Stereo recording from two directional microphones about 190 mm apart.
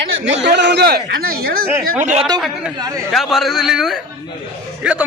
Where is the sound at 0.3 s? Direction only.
65° right (ahead or behind).